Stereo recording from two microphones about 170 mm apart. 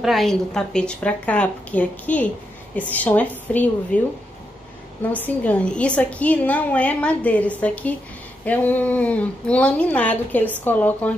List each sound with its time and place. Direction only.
0.0 s a woman's voice: centre (ahead or behind)
5.1 s a woman's voice: 10° left (ahead or behind)